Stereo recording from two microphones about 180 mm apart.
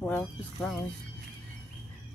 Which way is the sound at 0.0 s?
5° left (ahead or behind).